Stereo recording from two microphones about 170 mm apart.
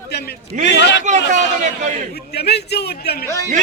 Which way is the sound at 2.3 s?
75° left (ahead or behind).